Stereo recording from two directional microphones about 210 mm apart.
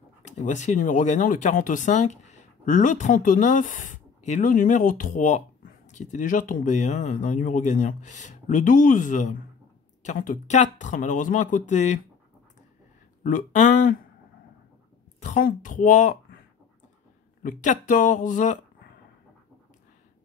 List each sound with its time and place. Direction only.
0.4 s speech: 35° left (ahead or behind)
13.2 s speech: 35° left (ahead or behind)
15.1 s speech: 35° left (ahead or behind)
17.4 s speech: 40° left (ahead or behind)